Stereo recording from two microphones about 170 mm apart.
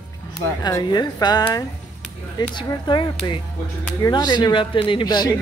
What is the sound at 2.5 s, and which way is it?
Speech, 25° left (ahead or behind).